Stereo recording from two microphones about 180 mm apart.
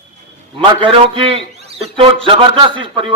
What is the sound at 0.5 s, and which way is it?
A man's voice, 30° right (ahead or behind).